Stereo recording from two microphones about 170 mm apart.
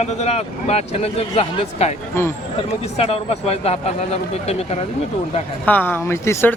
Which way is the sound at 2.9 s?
35° left (ahead or behind).